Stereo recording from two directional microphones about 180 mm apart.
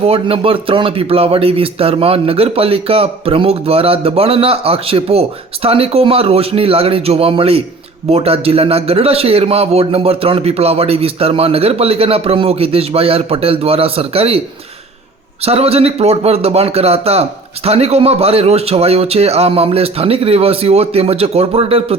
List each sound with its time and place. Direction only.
0.0 s speech: 30° right (ahead or behind)